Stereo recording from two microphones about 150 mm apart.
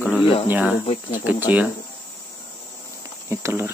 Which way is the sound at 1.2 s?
10° right (ahead or behind).